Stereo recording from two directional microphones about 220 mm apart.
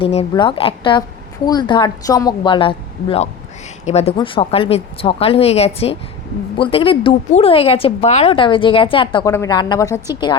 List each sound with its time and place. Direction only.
0.0 s a woman's voice: 25° left (ahead or behind)